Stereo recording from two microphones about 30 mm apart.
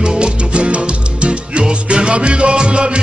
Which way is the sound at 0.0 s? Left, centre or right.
Right.